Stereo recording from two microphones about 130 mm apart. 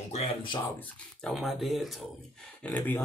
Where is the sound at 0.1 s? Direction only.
55° left (ahead or behind).